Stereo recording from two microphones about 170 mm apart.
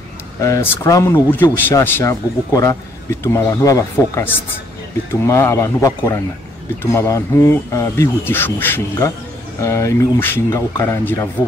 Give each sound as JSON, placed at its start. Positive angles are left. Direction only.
{"t": 0.4, "sound": "speech", "side_deg": 15}